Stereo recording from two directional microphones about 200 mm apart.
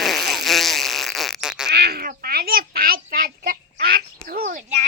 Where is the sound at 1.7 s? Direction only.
55° right (ahead or behind).